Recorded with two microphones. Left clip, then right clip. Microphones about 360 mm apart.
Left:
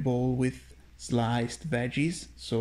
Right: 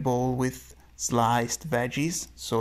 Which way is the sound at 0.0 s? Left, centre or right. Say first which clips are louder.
Right 3 dB; right.